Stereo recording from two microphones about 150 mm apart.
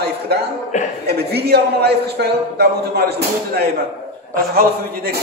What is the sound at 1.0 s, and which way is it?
A man's voice, 90° right.